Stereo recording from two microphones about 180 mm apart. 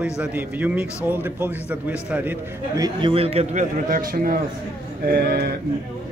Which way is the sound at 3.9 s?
55° right (ahead or behind).